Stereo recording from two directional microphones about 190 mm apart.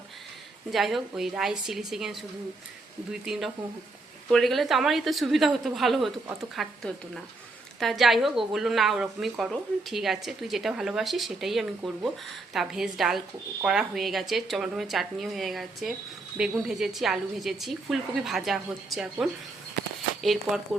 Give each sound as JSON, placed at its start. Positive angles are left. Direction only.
{"t": 0.7, "sound": "a woman's voice", "side_deg": 0}